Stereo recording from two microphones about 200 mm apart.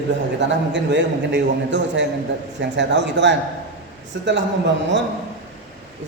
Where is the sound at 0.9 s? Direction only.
60° right (ahead or behind).